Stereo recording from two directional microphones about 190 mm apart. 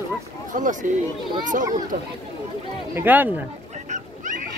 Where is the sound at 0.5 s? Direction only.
45° right (ahead or behind).